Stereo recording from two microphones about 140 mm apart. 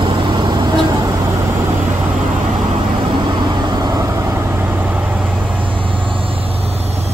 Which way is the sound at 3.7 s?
25° right (ahead or behind).